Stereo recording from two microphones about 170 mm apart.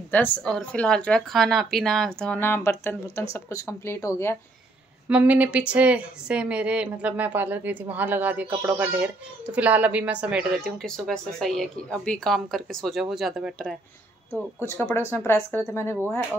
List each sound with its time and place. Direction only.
0.1 s speech: 5° left (ahead or behind)
5.0 s speech: 10° right (ahead or behind)
14.6 s speech: 15° left (ahead or behind)